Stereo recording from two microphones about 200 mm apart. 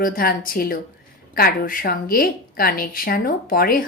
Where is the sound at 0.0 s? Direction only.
45° left (ahead or behind).